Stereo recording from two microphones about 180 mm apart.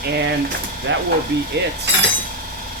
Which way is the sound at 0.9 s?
90° right.